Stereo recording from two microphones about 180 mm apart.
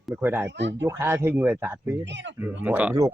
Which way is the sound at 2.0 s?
80° right.